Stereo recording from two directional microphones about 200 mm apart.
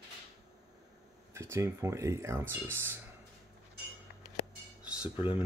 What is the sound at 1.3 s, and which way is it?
Speech, 15° right (ahead or behind).